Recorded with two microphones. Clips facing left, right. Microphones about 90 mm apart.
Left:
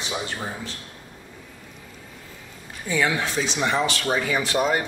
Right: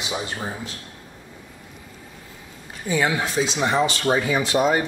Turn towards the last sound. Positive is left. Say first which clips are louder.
# right 3 dB
turn(degrees=-15)  # may be behind; listen again after turning